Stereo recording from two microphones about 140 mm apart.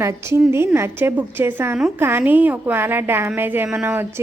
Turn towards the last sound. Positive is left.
turn(degrees=-15)  # may be behind; listen again after turning